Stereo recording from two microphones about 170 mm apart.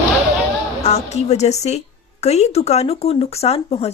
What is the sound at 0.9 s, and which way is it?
Speech, 40° left (ahead or behind).